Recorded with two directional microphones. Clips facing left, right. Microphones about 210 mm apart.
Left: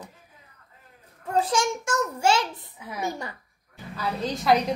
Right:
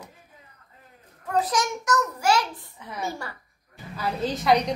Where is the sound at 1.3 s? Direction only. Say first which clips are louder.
Left 1 dB; 25° left (ahead or behind).